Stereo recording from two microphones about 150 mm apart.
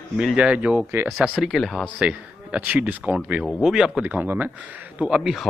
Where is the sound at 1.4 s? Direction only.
Centre (ahead or behind).